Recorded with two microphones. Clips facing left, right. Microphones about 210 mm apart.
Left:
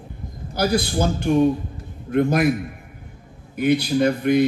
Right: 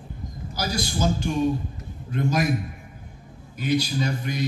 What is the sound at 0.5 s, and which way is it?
A man's voice, 60° left (ahead or behind).